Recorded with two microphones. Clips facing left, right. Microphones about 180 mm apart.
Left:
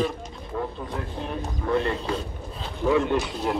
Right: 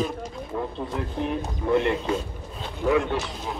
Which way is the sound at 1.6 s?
20° right (ahead or behind).